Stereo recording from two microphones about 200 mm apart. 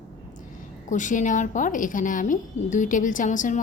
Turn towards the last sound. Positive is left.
turn(degrees=40)  # may be behind; listen again after turning